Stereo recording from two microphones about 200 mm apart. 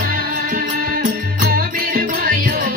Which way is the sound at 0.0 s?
45° right (ahead or behind).